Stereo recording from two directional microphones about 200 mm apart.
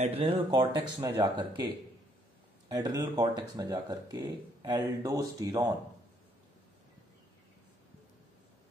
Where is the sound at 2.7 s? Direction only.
20° right (ahead or behind).